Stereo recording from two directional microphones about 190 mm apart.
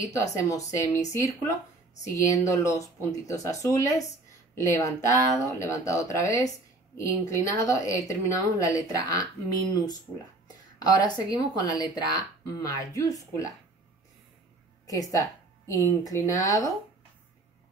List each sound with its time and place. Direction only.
0.0 s speech: 15° left (ahead or behind)
11.0 s speech: 20° left (ahead or behind)
14.9 s a woman's voice: 20° left (ahead or behind)